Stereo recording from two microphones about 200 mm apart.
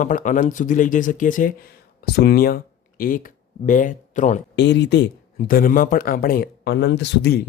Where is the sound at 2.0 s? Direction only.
50° left (ahead or behind).